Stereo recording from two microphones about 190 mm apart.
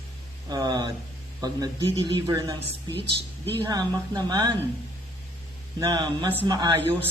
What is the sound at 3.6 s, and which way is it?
Speech, 20° right (ahead or behind).